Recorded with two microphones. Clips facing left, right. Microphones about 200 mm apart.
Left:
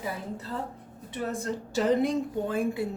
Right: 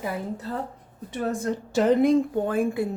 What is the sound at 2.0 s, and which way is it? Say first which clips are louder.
Speech: right 7 dB; 55° right (ahead or behind).